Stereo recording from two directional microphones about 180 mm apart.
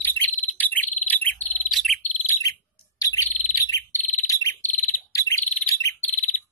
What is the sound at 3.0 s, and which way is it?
Bird, 20° left (ahead or behind).